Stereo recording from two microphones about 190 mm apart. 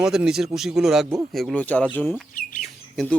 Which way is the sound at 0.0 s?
5° right (ahead or behind).